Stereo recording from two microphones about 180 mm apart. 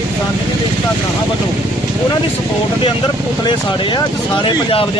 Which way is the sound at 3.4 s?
25° left (ahead or behind).